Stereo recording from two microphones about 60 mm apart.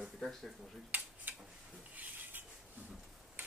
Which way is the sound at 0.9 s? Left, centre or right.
Right.